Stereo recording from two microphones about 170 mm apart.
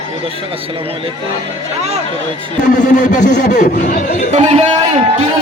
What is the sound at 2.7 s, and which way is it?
Speech, 45° left (ahead or behind).